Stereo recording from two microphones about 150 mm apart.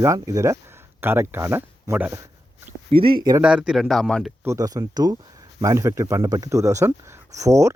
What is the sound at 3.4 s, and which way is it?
Speech, 5° right (ahead or behind).